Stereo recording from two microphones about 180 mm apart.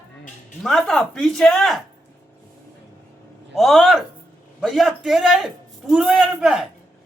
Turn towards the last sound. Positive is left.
turn(degrees=-5)  # may be behind; listen again after turning